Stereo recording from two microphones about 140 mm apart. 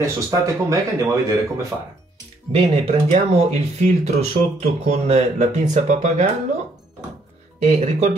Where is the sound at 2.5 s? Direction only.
45° right (ahead or behind).